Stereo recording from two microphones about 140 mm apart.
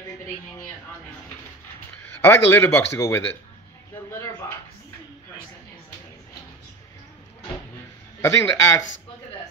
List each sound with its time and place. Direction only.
2.2 s speech: 15° left (ahead or behind)
8.2 s speech: 20° left (ahead or behind)